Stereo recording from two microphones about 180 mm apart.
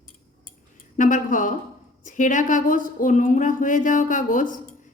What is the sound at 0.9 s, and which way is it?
A woman's voice, 45° left (ahead or behind).